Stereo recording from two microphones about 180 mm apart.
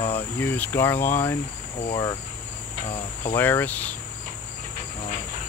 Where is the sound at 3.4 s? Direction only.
10° left (ahead or behind).